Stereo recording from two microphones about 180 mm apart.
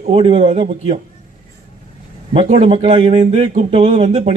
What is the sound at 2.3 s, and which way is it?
A man's voice, 35° right (ahead or behind).